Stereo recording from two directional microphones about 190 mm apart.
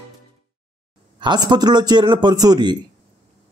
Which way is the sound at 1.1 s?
20° right (ahead or behind).